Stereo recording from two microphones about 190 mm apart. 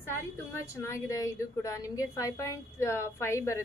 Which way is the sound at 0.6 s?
15° left (ahead or behind).